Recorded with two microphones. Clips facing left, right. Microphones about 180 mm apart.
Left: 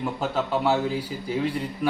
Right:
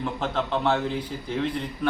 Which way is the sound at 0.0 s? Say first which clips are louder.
Left 1 dB; 5° left (ahead or behind).